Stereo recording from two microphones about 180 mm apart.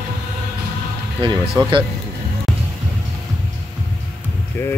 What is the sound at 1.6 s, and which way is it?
Speech, 25° right (ahead or behind).